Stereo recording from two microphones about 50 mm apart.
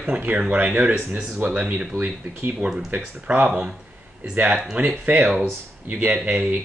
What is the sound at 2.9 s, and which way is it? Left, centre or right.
Speech, right.